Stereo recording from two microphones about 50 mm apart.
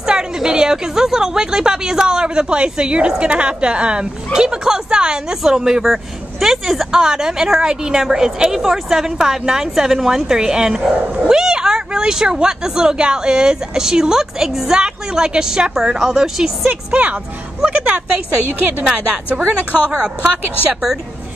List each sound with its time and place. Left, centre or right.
0.0 s a woman's voice: centre
16.6 s speech: right
17.6 s speech: centre
18.5 s a woman's voice: right